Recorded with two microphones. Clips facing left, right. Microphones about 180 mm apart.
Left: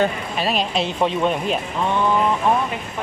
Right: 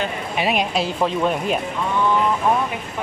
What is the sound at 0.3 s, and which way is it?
Speech, 15° right (ahead or behind).